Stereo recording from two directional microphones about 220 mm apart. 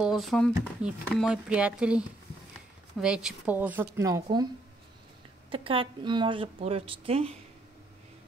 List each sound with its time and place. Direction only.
0.0 s a woman's voice: centre (ahead or behind); by 4.5 s 15° right (ahead or behind)
5.5 s a woman's voice: 25° right (ahead or behind)